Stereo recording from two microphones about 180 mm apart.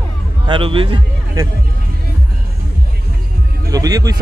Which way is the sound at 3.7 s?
20° right (ahead or behind).